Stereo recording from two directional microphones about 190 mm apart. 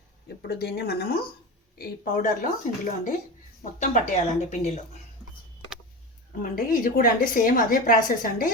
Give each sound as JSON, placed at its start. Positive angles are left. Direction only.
{"t": 0.4, "sound": "speech", "side_deg": 60}
{"t": 1.8, "sound": "a woman's voice", "side_deg": 45}
{"t": 6.4, "sound": "a woman's voice", "side_deg": 45}